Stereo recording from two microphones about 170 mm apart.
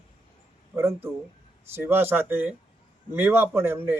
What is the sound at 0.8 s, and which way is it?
Speech, 15° right (ahead or behind).